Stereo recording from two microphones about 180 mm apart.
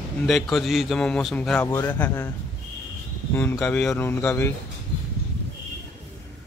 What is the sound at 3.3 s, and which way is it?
Speech, 10° left (ahead or behind).